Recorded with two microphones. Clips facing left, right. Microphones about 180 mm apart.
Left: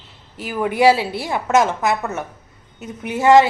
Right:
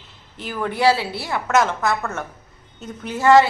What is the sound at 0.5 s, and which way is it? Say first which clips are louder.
A woman's voice: left 4 dB; 15° left (ahead or behind).